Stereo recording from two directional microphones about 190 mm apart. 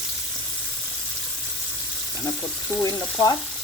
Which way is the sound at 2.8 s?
20° left (ahead or behind).